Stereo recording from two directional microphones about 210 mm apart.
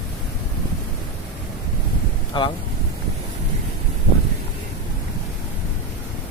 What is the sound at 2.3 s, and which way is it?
Speech, 20° left (ahead or behind).